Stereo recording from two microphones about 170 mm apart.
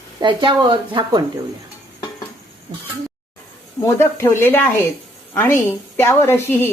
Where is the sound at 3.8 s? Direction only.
15° left (ahead or behind).